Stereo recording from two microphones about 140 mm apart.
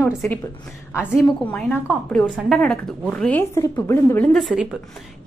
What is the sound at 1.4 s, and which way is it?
A woman's voice, 10° left (ahead or behind).